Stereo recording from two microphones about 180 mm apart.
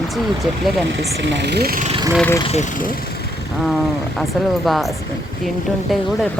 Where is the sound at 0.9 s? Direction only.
80° right; by 1.9 s 55° right (ahead or behind).